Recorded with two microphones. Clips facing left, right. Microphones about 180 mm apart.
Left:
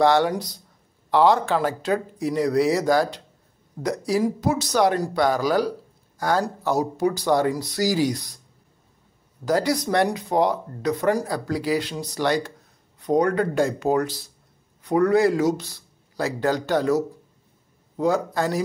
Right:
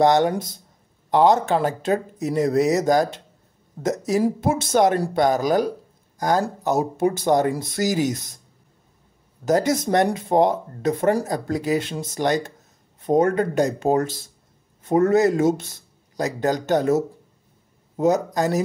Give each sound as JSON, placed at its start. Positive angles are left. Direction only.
{"t": 0.0, "sound": "speech", "side_deg": -20}
{"t": 9.4, "sound": "speech", "side_deg": -20}